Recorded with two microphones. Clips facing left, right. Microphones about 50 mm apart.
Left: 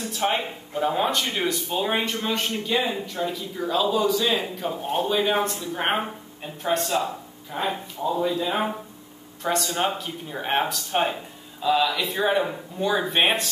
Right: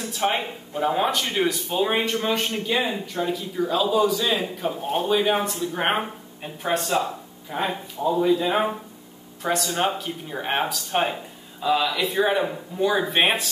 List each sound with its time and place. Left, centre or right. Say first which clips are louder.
0.1 s a man's voice: right 1 dB; centre
9.4 s a man's voice: right 1 dB; centre